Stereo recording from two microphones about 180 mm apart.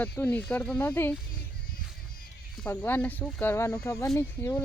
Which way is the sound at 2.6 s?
10° left (ahead or behind).